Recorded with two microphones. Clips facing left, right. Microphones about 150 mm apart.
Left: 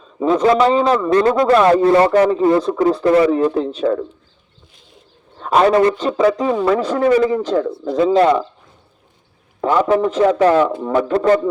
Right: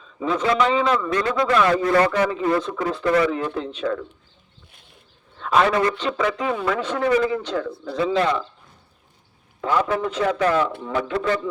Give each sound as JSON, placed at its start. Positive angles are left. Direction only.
{"t": 0.0, "sound": "a man's voice", "side_deg": 40}
{"t": 5.4, "sound": "a man's voice", "side_deg": 40}
{"t": 9.6, "sound": "a man's voice", "side_deg": 40}